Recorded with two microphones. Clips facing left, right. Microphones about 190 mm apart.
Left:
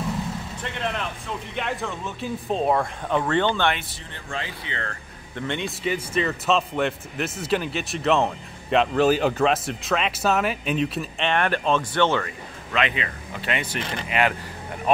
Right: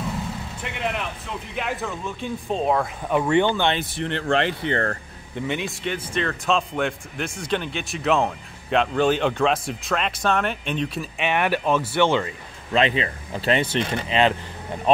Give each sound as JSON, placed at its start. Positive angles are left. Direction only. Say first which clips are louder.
{"t": 0.6, "sound": "speech", "louder": "right 2 dB", "side_deg": -5}
{"t": 4.0, "sound": "speech", "louder": "right 12 dB", "side_deg": -70}
{"t": 5.3, "sound": "speech", "louder": "right 2 dB", "side_deg": -5}
{"t": 11.1, "sound": "speech", "louder": "right 1 dB", "side_deg": -10}
{"t": 12.7, "sound": "speech", "louder": "right 5 dB", "side_deg": -30}